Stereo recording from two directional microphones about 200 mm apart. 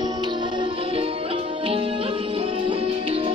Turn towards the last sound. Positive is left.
turn(degrees=-30)  # may be behind; listen again after turning